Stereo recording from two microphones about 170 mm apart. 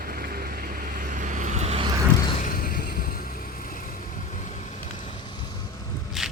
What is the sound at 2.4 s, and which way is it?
Vehicle, 55° left (ahead or behind).